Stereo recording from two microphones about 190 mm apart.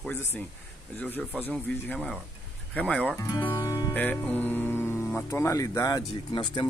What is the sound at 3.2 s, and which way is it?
Music, 15° left (ahead or behind).